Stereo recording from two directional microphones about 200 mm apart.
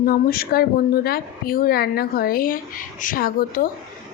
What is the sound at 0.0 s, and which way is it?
A woman's voice, 50° left (ahead or behind).